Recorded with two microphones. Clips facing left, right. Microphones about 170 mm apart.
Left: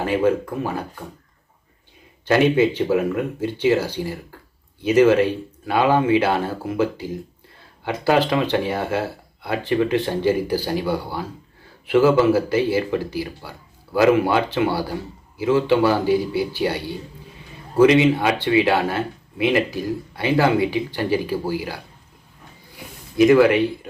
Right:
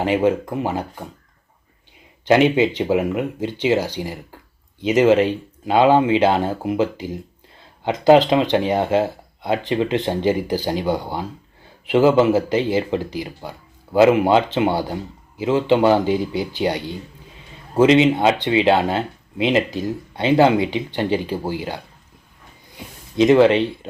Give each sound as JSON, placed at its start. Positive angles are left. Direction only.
{"t": 0.0, "sound": "speech", "side_deg": -20}
{"t": 2.2, "sound": "speech", "side_deg": -20}
{"t": 22.7, "sound": "a sound", "side_deg": -20}